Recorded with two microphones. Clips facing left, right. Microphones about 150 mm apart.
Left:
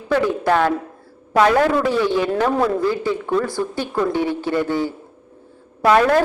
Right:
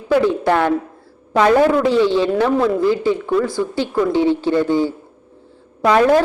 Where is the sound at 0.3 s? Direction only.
15° right (ahead or behind).